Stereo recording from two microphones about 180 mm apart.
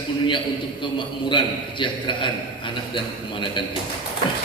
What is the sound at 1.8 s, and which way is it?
Speech, 25° left (ahead or behind).